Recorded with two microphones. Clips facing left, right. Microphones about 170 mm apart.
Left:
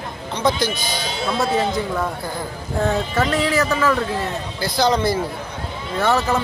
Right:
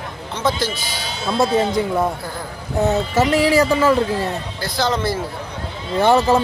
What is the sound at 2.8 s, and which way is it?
Speech, 20° right (ahead or behind).